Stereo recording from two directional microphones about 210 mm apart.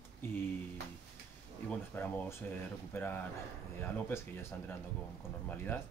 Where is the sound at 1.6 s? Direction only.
10° left (ahead or behind).